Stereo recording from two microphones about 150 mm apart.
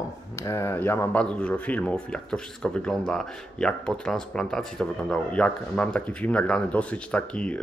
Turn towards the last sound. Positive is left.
turn(degrees=5)  # may be behind; listen again after turning